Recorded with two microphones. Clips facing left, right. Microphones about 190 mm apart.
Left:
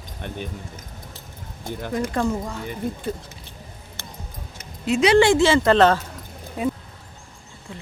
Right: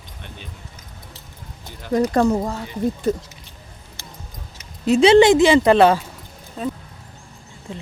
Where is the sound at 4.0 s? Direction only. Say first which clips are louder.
Left 1 dB; 55° left (ahead or behind).